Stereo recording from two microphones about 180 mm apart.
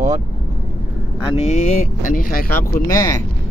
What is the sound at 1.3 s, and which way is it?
Speech, 35° left (ahead or behind).